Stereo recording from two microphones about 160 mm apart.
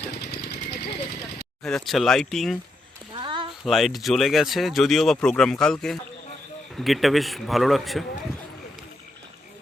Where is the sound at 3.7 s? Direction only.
Centre (ahead or behind).